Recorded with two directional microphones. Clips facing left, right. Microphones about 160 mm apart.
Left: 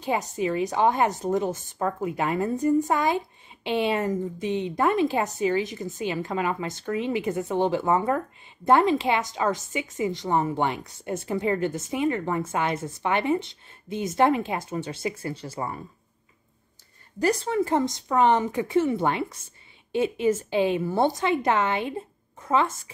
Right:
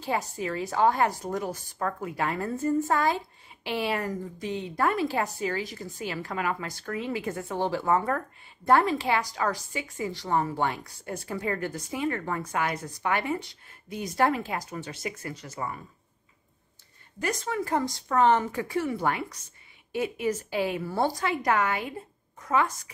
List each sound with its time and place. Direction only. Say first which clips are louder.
0.0 s a woman's voice: left 4 dB; 20° left (ahead or behind)
17.2 s a woman's voice: left 7 dB; 30° left (ahead or behind)